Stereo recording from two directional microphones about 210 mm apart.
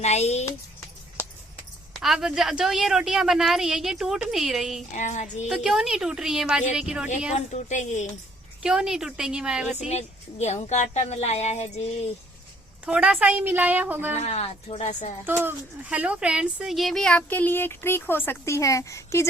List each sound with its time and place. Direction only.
0.0 s a woman's voice: 30° left (ahead or behind)
1.9 s a woman's voice: centre (ahead or behind)
4.9 s a woman's voice: 35° left (ahead or behind)
5.5 s a woman's voice: centre (ahead or behind)
7.3 s a woman's voice: 35° left (ahead or behind)
8.6 s a woman's voice: 5° right (ahead or behind)
9.9 s a woman's voice: 30° left (ahead or behind)
12.8 s a woman's voice: 5° right (ahead or behind)
14.2 s a woman's voice: 30° left (ahead or behind)
15.3 s speech: 10° right (ahead or behind); by 19.3 s 15° left (ahead or behind)